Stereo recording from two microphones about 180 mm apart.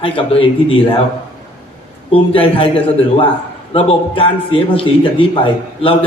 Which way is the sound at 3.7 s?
30° left (ahead or behind).